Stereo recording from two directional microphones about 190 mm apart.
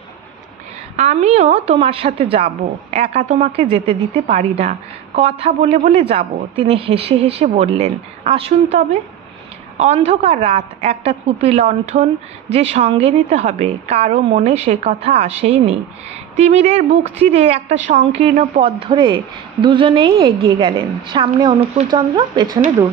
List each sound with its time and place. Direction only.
0.9 s a woman's voice: 35° right (ahead or behind)
3.7 s a woman's voice: 30° right (ahead or behind)
9.8 s a woman's voice: 35° right (ahead or behind)